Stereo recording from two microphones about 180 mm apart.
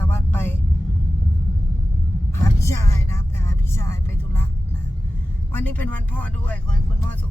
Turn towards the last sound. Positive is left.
turn(degrees=10)  # may be behind; listen again after turning